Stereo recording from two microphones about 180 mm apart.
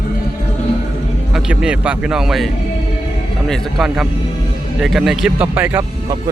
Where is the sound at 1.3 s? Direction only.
5° right (ahead or behind).